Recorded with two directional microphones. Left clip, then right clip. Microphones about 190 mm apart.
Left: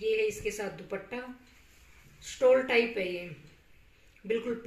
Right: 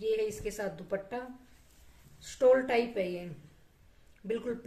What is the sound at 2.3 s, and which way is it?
Speech, 25° right (ahead or behind).